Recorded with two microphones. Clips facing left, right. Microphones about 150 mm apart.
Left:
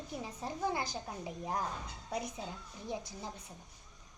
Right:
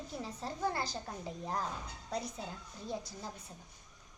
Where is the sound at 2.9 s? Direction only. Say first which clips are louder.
Even; 15° left (ahead or behind).